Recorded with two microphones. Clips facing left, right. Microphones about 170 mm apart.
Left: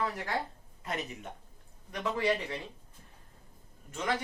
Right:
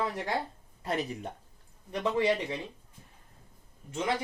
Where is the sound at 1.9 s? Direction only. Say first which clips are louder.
Right 3 dB; 25° right (ahead or behind).